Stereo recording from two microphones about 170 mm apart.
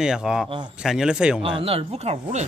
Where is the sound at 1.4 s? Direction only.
30° right (ahead or behind).